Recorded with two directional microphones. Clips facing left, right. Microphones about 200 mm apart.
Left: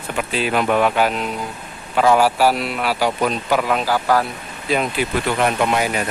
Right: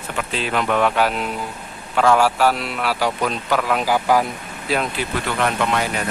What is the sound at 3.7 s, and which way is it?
Speech, 15° right (ahead or behind).